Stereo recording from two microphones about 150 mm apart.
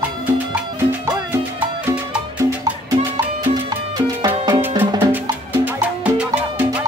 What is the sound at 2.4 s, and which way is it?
Music, 25° right (ahead or behind).